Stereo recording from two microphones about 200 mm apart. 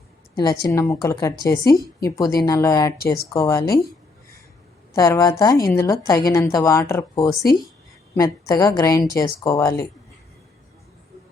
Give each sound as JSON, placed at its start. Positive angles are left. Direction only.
{"t": 0.3, "sound": "speech", "side_deg": 15}
{"t": 4.9, "sound": "speech", "side_deg": 15}